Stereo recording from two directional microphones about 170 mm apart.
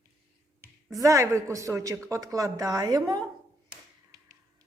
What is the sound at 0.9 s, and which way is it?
Speech, 20° right (ahead or behind).